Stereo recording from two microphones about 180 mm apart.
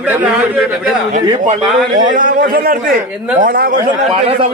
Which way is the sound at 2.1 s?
50° right (ahead or behind).